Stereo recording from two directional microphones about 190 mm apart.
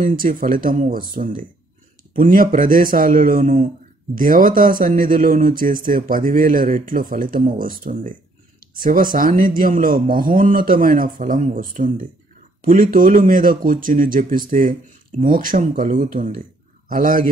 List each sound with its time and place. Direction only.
0.0 s speech: 45° right (ahead or behind)